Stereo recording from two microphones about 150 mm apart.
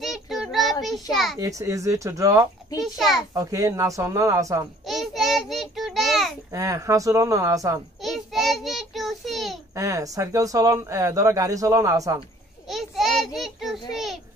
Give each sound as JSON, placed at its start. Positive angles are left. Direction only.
{"t": 0.0, "sound": "child singing", "side_deg": 0}
{"t": 1.1, "sound": "a child's voice", "side_deg": 0}
{"t": 1.4, "sound": "speech", "side_deg": -20}
{"t": 2.8, "sound": "a child's voice", "side_deg": 0}
{"t": 3.3, "sound": "speech", "side_deg": -25}
{"t": 4.8, "sound": "child singing", "side_deg": 0}
{"t": 6.5, "sound": "speech", "side_deg": -20}
{"t": 8.0, "sound": "child singing", "side_deg": 0}
{"t": 9.8, "sound": "speech", "side_deg": -20}
{"t": 12.6, "sound": "a sound", "side_deg": 0}